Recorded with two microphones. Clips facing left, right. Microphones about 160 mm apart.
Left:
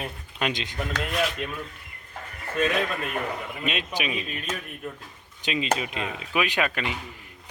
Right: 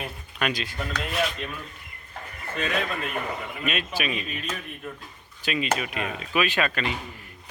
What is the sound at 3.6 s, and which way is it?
Speech, 20° left (ahead or behind).